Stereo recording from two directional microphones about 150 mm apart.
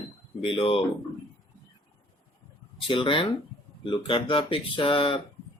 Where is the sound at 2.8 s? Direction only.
35° left (ahead or behind).